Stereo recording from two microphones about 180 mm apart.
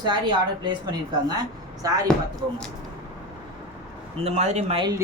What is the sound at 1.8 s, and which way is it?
Speech, 20° right (ahead or behind).